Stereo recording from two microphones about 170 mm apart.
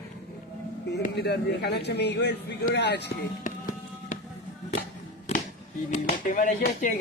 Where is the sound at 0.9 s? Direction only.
75° left (ahead or behind).